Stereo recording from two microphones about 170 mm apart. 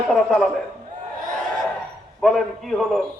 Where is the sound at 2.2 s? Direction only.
Centre (ahead or behind).